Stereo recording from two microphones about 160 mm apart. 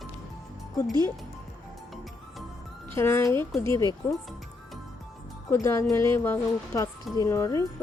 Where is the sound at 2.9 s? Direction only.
15° left (ahead or behind).